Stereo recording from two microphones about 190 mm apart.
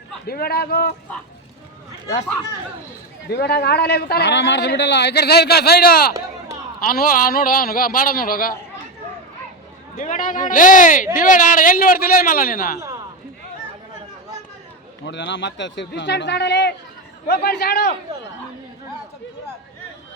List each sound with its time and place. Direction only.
0.3 s speech: 55° left (ahead or behind)
3.3 s speech: 60° left (ahead or behind)
9.9 s speech: 45° left (ahead or behind)
15.0 s speech: 70° left (ahead or behind)